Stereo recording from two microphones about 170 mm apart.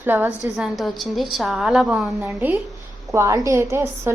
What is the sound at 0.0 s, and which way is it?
A woman's voice, 10° right (ahead or behind).